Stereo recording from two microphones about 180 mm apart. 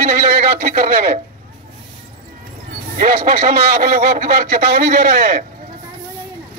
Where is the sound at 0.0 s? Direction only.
55° right (ahead or behind).